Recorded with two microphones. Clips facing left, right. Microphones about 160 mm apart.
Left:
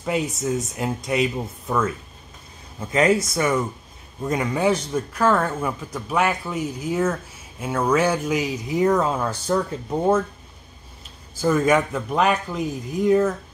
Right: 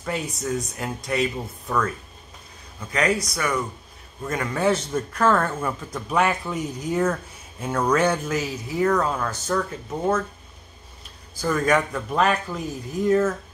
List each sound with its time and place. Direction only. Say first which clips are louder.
0.0 s speech: left 4 dB; 20° left (ahead or behind)
11.4 s speech: left 4 dB; 20° left (ahead or behind)
11.7 s speech: left 2 dB; 5° left (ahead or behind)